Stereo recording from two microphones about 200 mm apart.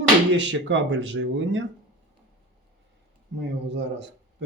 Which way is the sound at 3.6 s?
60° right (ahead or behind).